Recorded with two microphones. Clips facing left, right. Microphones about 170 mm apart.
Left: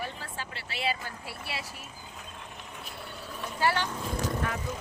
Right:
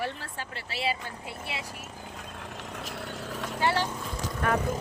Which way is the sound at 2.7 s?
85° right.